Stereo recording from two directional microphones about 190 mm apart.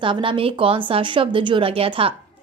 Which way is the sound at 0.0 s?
25° right (ahead or behind).